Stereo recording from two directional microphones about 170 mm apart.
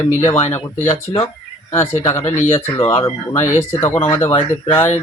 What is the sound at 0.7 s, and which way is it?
Speech, 45° left (ahead or behind).